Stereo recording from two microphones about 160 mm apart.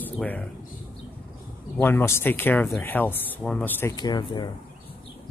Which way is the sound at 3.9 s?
25° left (ahead or behind).